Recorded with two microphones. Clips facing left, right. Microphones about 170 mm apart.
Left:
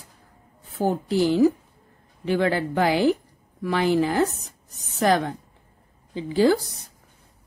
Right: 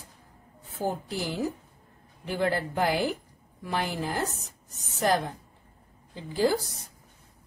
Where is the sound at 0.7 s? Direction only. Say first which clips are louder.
Left 9 dB; 75° left (ahead or behind).